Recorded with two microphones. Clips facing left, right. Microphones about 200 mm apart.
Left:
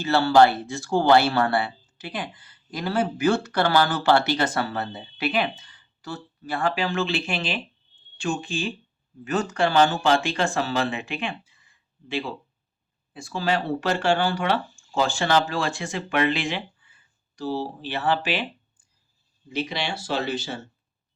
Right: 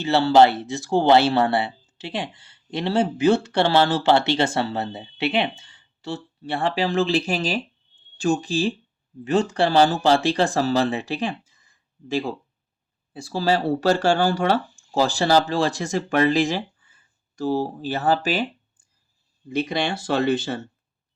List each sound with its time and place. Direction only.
0.0 s speech: 20° right (ahead or behind); by 18.4 s 40° right (ahead or behind)
19.5 s speech: 50° right (ahead or behind)